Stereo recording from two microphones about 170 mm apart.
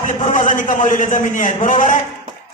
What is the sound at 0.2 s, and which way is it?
Speech, 45° left (ahead or behind).